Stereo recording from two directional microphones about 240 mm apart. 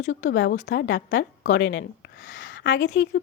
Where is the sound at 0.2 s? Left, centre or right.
Left.